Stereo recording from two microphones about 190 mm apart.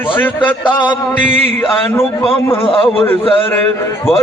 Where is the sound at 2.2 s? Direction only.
30° left (ahead or behind).